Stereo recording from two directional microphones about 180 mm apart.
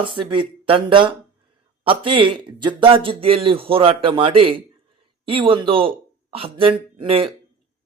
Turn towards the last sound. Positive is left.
turn(degrees=-30)  # may be behind; listen again after turning